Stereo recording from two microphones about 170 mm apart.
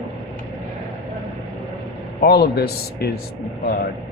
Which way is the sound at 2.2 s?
70° left (ahead or behind).